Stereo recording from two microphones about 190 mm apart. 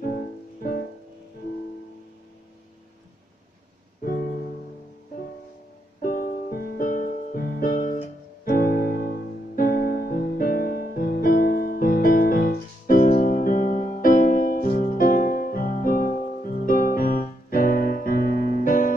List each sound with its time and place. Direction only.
0.0 s music: 50° left (ahead or behind)
6.0 s music: 45° left (ahead or behind)